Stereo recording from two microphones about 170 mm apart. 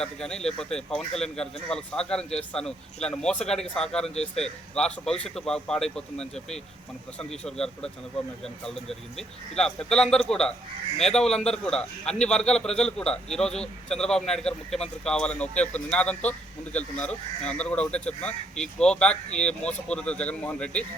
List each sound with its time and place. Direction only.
0.0 s speech: 5° left (ahead or behind)